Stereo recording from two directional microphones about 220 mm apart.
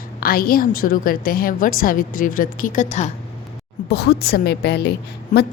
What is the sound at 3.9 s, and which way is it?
A woman's voice, 45° left (ahead or behind).